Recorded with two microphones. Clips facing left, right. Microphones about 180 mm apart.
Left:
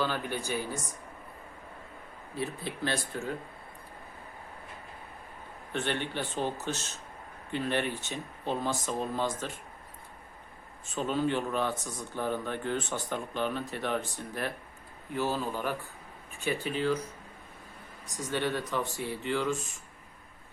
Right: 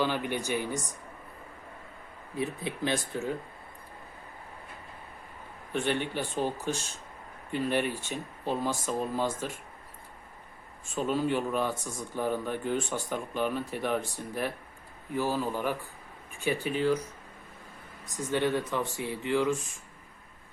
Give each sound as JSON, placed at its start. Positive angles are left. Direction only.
{"t": 0.0, "sound": "speech", "side_deg": -15}
{"t": 2.3, "sound": "speech", "side_deg": -15}
{"t": 5.7, "sound": "speech", "side_deg": -10}
{"t": 10.8, "sound": "speech", "side_deg": -10}
{"t": 18.3, "sound": "speech", "side_deg": -15}